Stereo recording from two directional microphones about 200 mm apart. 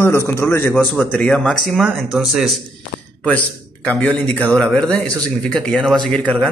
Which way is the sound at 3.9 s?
5° left (ahead or behind).